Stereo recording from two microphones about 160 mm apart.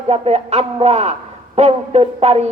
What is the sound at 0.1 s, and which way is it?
A woman's voice, 40° right (ahead or behind).